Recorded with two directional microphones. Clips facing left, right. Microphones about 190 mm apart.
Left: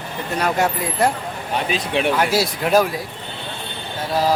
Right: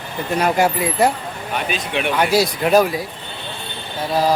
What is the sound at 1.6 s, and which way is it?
Speech, 30° left (ahead or behind).